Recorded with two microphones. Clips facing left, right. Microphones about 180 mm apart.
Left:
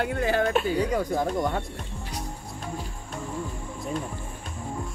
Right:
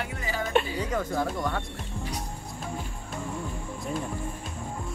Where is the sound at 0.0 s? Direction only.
60° left (ahead or behind).